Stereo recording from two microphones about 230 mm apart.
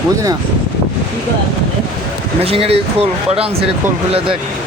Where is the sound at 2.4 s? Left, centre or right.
Right.